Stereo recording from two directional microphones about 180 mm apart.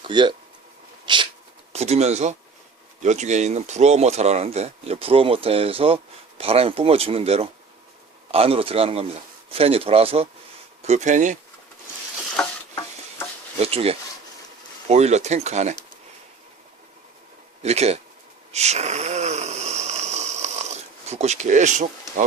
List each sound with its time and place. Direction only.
0.0 s speech: 25° right (ahead or behind)
1.0 s sneeze: 25° right (ahead or behind)
1.7 s speech: 35° right (ahead or behind)
13.6 s a sound: 35° right (ahead or behind)
14.8 s speech: 35° right (ahead or behind)
17.6 s speech: 35° right (ahead or behind)
18.5 s a sound: 35° right (ahead or behind)